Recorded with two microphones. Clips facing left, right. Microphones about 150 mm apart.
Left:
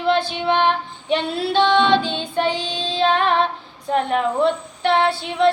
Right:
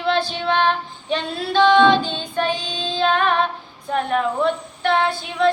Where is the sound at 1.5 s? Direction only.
25° left (ahead or behind).